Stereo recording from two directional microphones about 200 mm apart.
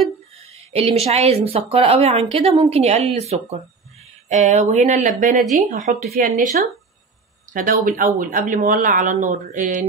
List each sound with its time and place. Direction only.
0.7 s a woman's voice: 30° right (ahead or behind)